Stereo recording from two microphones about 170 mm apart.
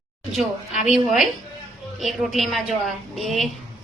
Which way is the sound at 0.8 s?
Centre (ahead or behind).